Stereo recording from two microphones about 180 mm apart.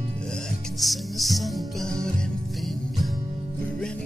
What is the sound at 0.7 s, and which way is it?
Music, centre (ahead or behind).